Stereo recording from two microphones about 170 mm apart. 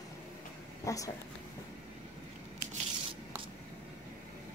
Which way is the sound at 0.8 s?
20° left (ahead or behind).